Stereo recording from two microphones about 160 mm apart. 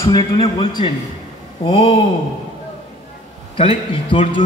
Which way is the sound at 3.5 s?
35° left (ahead or behind).